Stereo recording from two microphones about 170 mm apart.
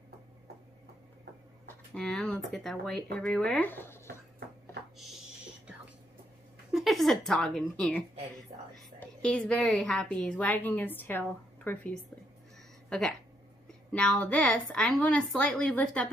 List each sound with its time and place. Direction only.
2.0 s a woman's voice: 5° left (ahead or behind)
6.7 s a woman's voice: centre (ahead or behind)
9.0 s a woman's voice: 5° left (ahead or behind)
13.7 s a woman's voice: 5° left (ahead or behind)